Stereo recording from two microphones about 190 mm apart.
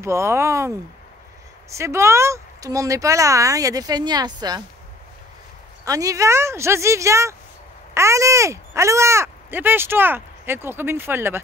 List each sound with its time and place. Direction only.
0.0 s speech: 15° right (ahead or behind)
5.9 s speech: 15° right (ahead or behind)